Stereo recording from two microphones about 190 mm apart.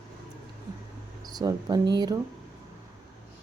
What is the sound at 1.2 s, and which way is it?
Speech, 20° right (ahead or behind).